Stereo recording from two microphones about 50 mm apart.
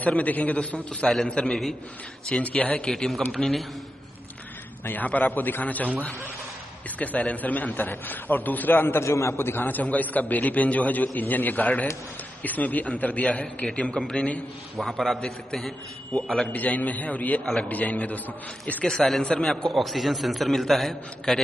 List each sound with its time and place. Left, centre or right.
0.0 s a man's voice: left
2.9 s a man's voice: centre
3.2 s a man's voice: left
4.8 s a man's voice: left
7.0 s a man's voice: left
8.7 s a man's voice: left
9.8 s a man's voice: left
13.9 s a man's voice: centre
14.8 s a man's voice: centre
16.2 s a man's voice: centre
16.5 s a man's voice: left
18.9 s a man's voice: centre
19.7 s a man's voice: centre